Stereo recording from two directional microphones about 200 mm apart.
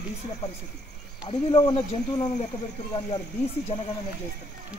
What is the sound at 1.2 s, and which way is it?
Speech, 25° left (ahead or behind).